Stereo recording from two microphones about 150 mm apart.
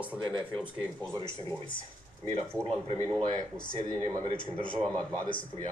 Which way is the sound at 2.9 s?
35° right (ahead or behind).